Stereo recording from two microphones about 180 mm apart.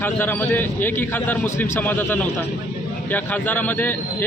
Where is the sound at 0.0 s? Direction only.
10° left (ahead or behind).